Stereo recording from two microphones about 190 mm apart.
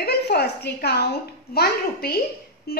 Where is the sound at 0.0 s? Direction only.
55° left (ahead or behind).